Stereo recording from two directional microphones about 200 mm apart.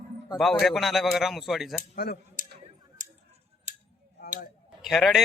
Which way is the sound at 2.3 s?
40° right (ahead or behind).